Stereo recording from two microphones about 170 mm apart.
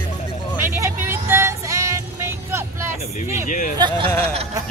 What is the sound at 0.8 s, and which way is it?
Music, 15° right (ahead or behind).